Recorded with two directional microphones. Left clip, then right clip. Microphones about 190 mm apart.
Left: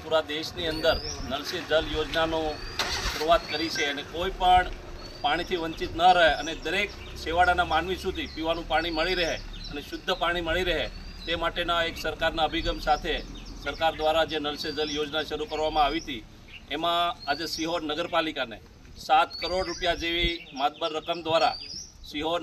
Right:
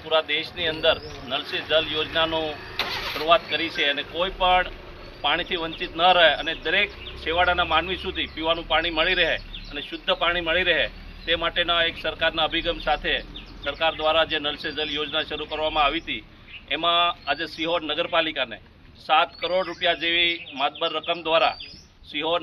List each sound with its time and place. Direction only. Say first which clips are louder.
0.1 s a man's voice: right 4 dB; 5° left (ahead or behind)
2.8 s neigh: right 2 dB; 80° left
3.3 s a man's voice: right 4 dB; 5° left (ahead or behind)